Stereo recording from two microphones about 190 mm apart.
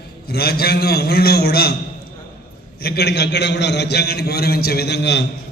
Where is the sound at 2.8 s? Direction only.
60° left (ahead or behind).